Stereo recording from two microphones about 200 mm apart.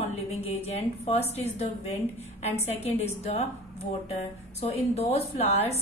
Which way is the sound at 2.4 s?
30° left (ahead or behind).